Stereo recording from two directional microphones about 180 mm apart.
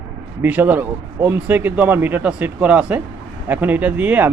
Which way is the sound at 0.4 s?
10° right (ahead or behind).